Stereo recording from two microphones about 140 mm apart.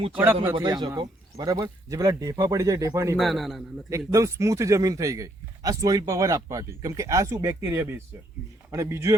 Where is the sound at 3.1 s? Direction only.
Centre (ahead or behind).